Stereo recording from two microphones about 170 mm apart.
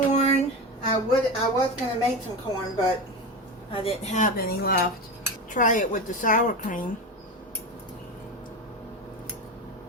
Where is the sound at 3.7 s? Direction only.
35° left (ahead or behind); by 4.9 s 60° left (ahead or behind).